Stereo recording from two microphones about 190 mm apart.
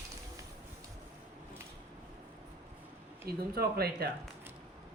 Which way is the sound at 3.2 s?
55° right (ahead or behind).